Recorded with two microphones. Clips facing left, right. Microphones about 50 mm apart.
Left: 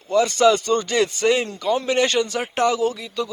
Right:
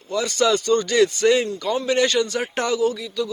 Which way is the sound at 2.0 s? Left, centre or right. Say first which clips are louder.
Even; left.